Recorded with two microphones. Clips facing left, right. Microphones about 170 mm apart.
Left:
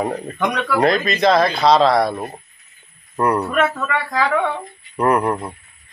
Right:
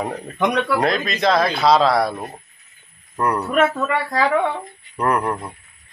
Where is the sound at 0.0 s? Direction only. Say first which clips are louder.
Left 1 dB; 5° left (ahead or behind).